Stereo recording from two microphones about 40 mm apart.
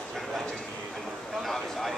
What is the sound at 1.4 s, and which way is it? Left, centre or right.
Speech, centre.